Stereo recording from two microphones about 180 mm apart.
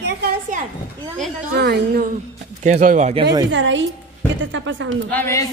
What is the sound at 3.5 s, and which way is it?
Speech, 90° right.